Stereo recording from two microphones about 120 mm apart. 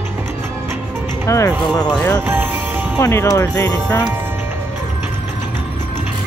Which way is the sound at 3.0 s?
25° left (ahead or behind).